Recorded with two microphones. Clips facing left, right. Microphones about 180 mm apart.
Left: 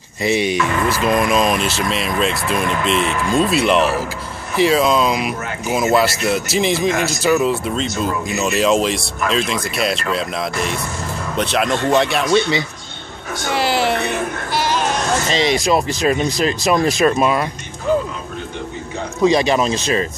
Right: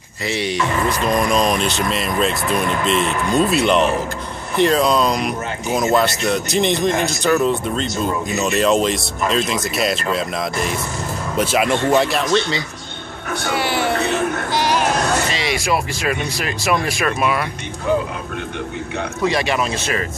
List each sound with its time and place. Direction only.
0.2 s speech: 15° left (ahead or behind)
0.8 s speech: 5° left (ahead or behind)
12.3 s speech: 15° left (ahead or behind)
14.5 s a sound: 15° right (ahead or behind)
15.4 s speech: 20° left (ahead or behind)
19.5 s speech: 30° left (ahead or behind)